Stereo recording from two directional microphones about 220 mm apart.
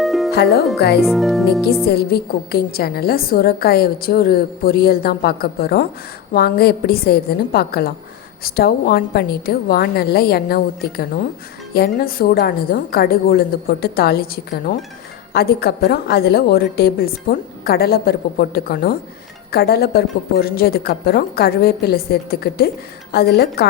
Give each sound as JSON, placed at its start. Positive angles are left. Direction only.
{"t": 0.0, "sound": "music", "side_deg": 0}
{"t": 0.8, "sound": "a woman's voice", "side_deg": 45}
{"t": 1.0, "sound": "speech", "side_deg": 0}
{"t": 1.8, "sound": "a woman's voice", "side_deg": 45}